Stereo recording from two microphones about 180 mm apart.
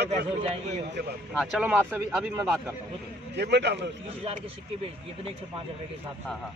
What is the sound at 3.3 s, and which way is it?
Speech, 70° right (ahead or behind).